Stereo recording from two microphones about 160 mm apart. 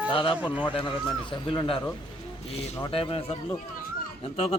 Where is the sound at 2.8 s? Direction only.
35° left (ahead or behind).